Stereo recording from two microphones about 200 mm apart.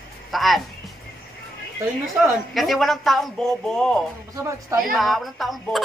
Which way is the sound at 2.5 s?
Centre (ahead or behind).